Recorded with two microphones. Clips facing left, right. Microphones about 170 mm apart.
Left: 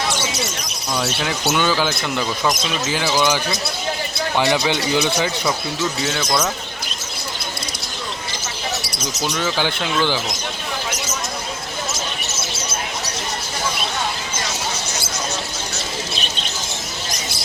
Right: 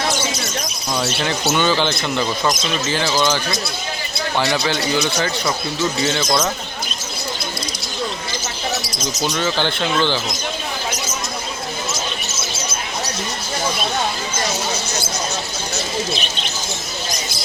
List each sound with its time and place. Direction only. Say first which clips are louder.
0.9 s speech: right 1 dB; centre (ahead or behind); by 5.3 s 20° left (ahead or behind)
6.0 s speech: right 3 dB; centre (ahead or behind)
9.4 s speech: right 1 dB; 10° left (ahead or behind)